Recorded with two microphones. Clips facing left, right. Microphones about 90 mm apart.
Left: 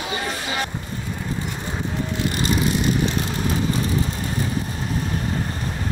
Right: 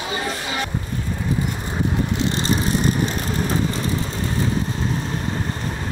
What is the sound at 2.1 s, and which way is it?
Vehicle, 25° right (ahead or behind).